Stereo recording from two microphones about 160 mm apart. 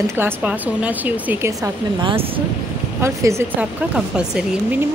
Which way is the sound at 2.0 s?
30° right (ahead or behind).